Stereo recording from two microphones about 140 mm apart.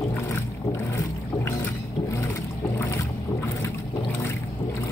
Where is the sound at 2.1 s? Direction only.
20° left (ahead or behind).